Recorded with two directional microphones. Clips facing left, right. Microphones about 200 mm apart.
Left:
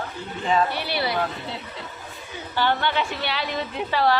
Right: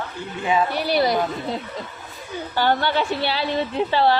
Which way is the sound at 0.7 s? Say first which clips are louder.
Right 6 dB; 45° right (ahead or behind).